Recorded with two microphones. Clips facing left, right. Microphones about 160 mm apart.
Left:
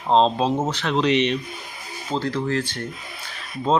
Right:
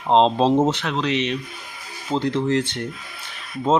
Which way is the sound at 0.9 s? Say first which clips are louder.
Left 3 dB; centre (ahead or behind).